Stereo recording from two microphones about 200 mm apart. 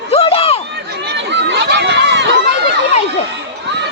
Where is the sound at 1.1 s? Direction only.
60° right (ahead or behind).